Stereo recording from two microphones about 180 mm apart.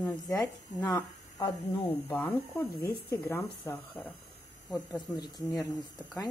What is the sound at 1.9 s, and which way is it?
Speech, 10° left (ahead or behind).